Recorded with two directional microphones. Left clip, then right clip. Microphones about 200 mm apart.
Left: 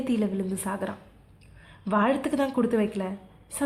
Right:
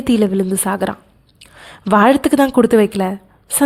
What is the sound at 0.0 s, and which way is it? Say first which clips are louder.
A woman's voice: right 13 dB; 50° right (ahead or behind).